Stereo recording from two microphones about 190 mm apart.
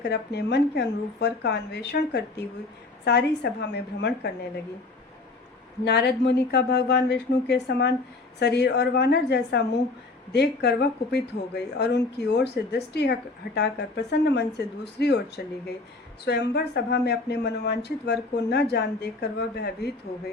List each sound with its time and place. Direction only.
0.0 s a woman's voice: 60° left (ahead or behind)
5.8 s a woman's voice: 60° left (ahead or behind)
16.2 s a woman's voice: 65° left (ahead or behind)